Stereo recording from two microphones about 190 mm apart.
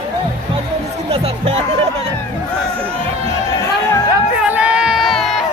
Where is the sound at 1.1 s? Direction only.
30° right (ahead or behind).